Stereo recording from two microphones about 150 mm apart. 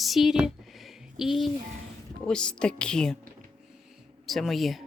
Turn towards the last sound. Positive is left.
turn(degrees=0)  # may be behind; listen again after turning